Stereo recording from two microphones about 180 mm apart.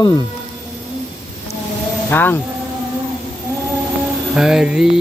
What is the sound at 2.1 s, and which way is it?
Speech, 10° left (ahead or behind).